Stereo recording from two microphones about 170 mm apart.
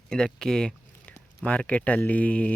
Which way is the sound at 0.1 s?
5° left (ahead or behind).